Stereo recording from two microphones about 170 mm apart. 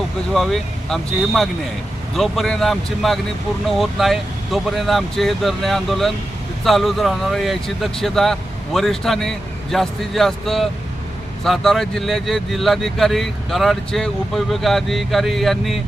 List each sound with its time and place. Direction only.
0.3 s speech: centre (ahead or behind)